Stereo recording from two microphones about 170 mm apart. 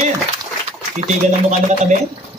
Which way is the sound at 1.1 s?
45° right (ahead or behind).